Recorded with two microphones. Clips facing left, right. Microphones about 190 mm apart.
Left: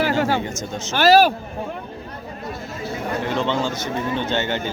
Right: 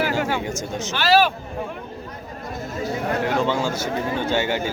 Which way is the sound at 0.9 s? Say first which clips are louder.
Left 4 dB; 45° left (ahead or behind).